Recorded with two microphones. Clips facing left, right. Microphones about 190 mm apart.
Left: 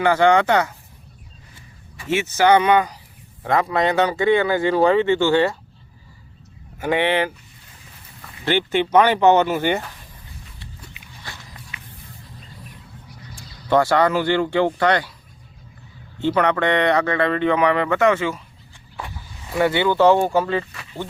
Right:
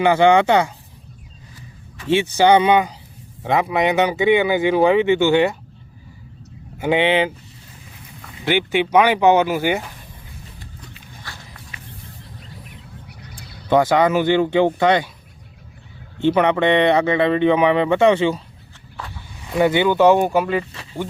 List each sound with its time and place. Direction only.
0.0 s speech: 25° right (ahead or behind)
2.0 s speech: 30° right (ahead or behind)
6.7 s speech: 20° right (ahead or behind)
8.4 s speech: 10° right (ahead or behind)
12.7 s a sound: 65° right (ahead or behind)
13.7 s speech: 15° right (ahead or behind)
16.2 s speech: 20° right (ahead or behind)
19.5 s speech: 15° right (ahead or behind)